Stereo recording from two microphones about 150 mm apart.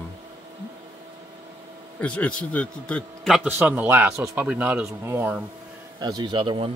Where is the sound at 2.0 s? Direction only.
10° left (ahead or behind).